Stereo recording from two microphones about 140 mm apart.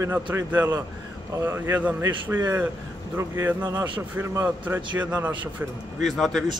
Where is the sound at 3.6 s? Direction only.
25° right (ahead or behind); by 5.6 s 10° right (ahead or behind).